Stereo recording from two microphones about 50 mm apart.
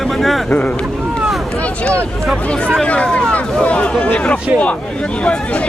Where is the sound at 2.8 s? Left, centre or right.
Left.